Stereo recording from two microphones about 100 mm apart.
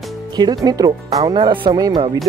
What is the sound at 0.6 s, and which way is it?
Speech, 40° right (ahead or behind).